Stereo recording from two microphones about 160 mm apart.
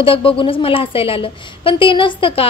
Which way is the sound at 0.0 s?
35° left (ahead or behind).